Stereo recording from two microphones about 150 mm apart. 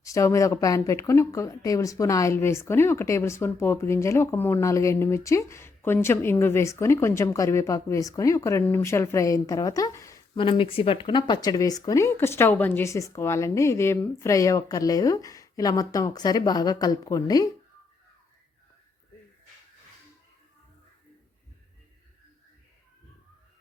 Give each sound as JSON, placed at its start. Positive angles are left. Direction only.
{"t": 0.0, "sound": "speech", "side_deg": 20}
{"t": 10.3, "sound": "speech", "side_deg": 35}